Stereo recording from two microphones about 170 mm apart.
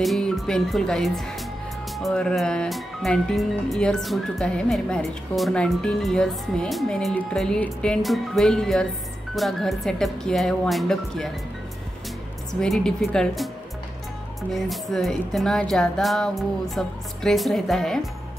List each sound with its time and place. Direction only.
0.0 s speech: centre (ahead or behind)
12.5 s speech: 5° left (ahead or behind)
14.5 s speech: centre (ahead or behind)